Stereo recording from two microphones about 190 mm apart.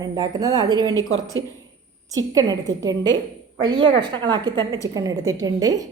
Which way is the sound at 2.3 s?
20° right (ahead or behind).